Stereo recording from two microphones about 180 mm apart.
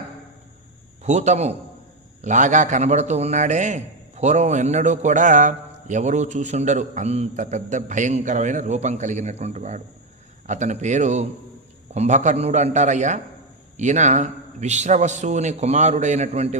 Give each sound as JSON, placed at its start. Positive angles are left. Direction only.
{"t": 1.0, "sound": "a man's voice", "side_deg": -40}